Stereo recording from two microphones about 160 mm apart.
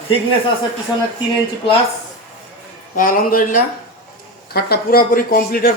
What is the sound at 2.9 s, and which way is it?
Speech, 60° left (ahead or behind).